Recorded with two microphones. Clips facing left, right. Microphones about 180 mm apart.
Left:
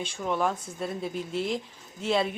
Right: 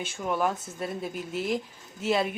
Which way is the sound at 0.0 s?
5° right (ahead or behind).